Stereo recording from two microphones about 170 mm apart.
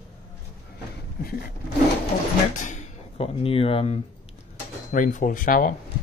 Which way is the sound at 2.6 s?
45° left (ahead or behind).